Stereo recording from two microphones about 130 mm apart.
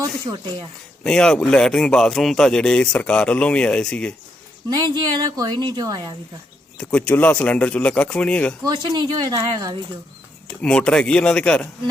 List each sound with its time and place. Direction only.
0.0 s speech: 30° right (ahead or behind)
1.0 s speech: 5° left (ahead or behind)
4.7 s a woman's voice: 35° right (ahead or behind)
6.7 s speech: 10° left (ahead or behind)
8.6 s a woman's voice: 30° right (ahead or behind)
10.6 s speech: 5° left (ahead or behind)